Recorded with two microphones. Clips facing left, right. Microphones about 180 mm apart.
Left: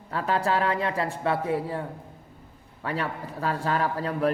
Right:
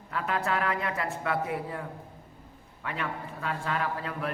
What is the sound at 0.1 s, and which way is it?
A man's voice, 30° left (ahead or behind).